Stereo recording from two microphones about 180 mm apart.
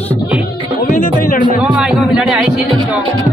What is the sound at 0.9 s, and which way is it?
Speech, 45° left (ahead or behind).